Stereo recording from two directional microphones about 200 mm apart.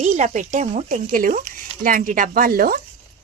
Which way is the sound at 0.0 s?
35° right (ahead or behind).